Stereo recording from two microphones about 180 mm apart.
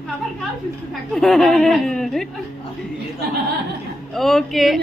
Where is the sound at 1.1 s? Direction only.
Centre (ahead or behind).